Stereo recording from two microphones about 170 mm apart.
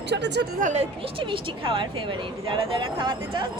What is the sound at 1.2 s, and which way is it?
Speech, 30° right (ahead or behind).